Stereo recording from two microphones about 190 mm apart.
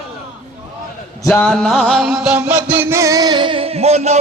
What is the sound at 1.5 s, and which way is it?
Music, centre (ahead or behind).